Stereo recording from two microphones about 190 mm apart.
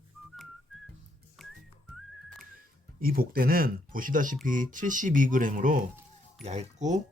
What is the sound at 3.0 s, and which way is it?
Speech, 50° right (ahead or behind).